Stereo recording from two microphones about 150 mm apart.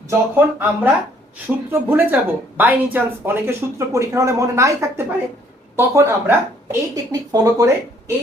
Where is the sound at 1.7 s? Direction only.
15° right (ahead or behind).